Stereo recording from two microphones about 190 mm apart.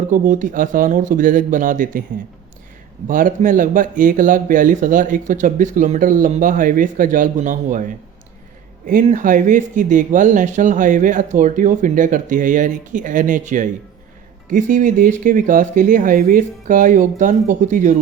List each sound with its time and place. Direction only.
0.1 s speech: 40° right (ahead or behind)
3.1 s speech: 45° right (ahead or behind)